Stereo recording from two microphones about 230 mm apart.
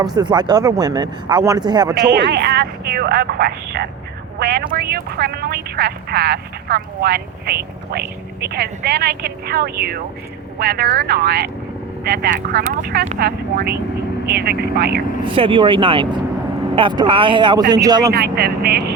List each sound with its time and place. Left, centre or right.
0.2 s speech: centre
2.0 s speech: right
15.2 s speech: right
18.1 s speech: right